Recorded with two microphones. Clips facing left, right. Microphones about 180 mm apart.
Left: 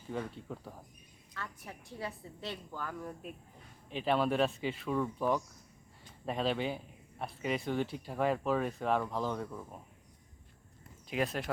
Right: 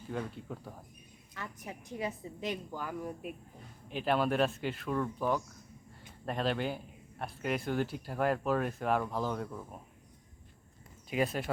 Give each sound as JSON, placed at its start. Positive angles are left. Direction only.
{"t": 0.1, "sound": "a man's voice", "side_deg": 0}
{"t": 1.3, "sound": "a woman's voice", "side_deg": -20}
{"t": 11.1, "sound": "a man's voice", "side_deg": -5}